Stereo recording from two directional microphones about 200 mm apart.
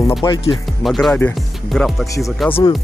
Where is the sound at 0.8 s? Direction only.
Centre (ahead or behind).